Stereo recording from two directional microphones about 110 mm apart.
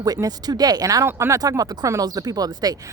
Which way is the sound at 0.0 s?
35° right (ahead or behind).